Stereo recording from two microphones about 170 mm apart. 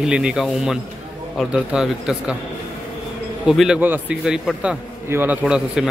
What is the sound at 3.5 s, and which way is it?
A man's voice, 5° right (ahead or behind).